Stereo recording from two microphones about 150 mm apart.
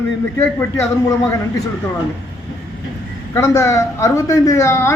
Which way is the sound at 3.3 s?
20° left (ahead or behind).